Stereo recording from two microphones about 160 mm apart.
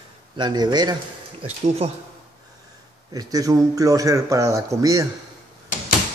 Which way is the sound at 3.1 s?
20° right (ahead or behind).